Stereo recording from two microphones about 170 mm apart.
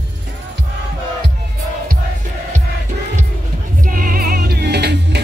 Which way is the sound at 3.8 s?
55° right (ahead or behind).